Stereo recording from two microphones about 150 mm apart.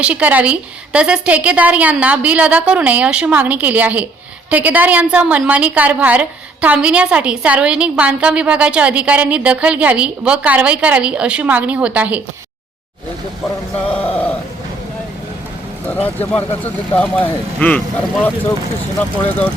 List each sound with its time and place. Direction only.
0.0 s a woman's voice: 10° right (ahead or behind)
13.8 s speech: 10° left (ahead or behind)
15.9 s speech: 10° left (ahead or behind)